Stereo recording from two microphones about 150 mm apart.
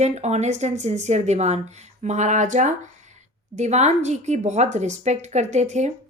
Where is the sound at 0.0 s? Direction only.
45° right (ahead or behind).